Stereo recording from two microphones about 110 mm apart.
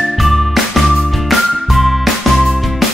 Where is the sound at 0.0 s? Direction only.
Centre (ahead or behind).